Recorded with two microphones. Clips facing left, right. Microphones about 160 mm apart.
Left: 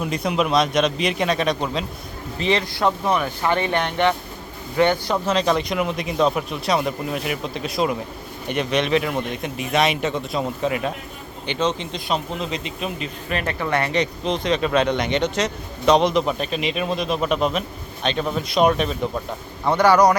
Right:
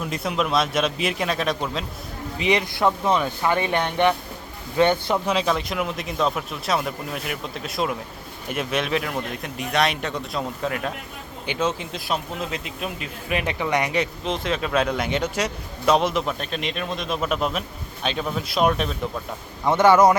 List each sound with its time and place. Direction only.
0.0 s speech: centre (ahead or behind)
2.4 s speech: 15° right (ahead or behind)
2.8 s speech: 15° left (ahead or behind)
3.2 s speech: 15° right (ahead or behind)
5.1 s speech: 5° right (ahead or behind)
19.6 s speech: 20° right (ahead or behind)